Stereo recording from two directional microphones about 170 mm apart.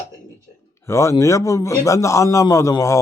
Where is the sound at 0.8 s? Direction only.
15° left (ahead or behind).